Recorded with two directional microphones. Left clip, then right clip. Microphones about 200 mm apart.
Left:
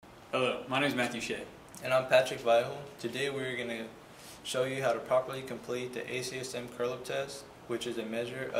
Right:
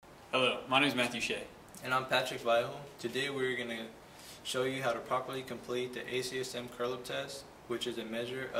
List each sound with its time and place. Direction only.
0.3 s speech: centre (ahead or behind)